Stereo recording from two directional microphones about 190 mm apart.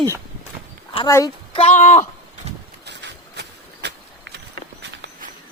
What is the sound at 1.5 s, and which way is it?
Speech, 35° left (ahead or behind).